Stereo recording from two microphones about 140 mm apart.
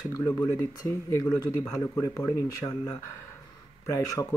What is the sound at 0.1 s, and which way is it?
Speech, 20° left (ahead or behind).